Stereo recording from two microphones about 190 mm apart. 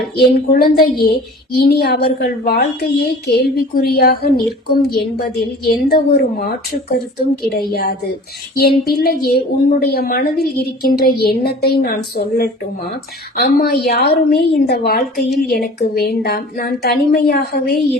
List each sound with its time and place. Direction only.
0.2 s a woman's voice: 55° left (ahead or behind)